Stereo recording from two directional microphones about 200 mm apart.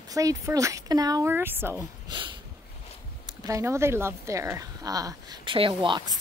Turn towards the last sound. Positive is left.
turn(degrees=-25)  # may be behind; listen again after turning